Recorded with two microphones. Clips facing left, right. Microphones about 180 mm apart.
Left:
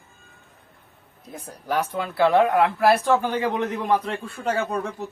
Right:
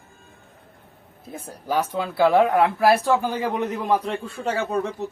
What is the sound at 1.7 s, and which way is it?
Speech, 5° right (ahead or behind).